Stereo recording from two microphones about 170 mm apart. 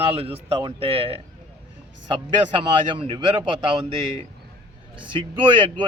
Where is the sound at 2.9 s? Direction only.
30° right (ahead or behind).